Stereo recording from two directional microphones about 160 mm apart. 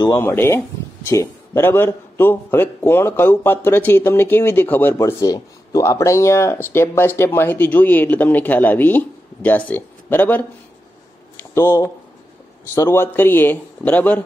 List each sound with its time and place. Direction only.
0.2 s a man's voice: 15° left (ahead or behind)
11.5 s a man's voice: 15° left (ahead or behind)